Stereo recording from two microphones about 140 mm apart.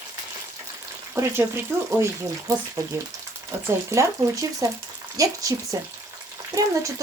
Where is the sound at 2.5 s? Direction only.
20° right (ahead or behind).